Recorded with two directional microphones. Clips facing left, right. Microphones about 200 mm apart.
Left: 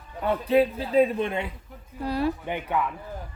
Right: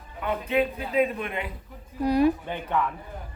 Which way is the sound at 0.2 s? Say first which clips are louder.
Left 4 dB; 35° left (ahead or behind).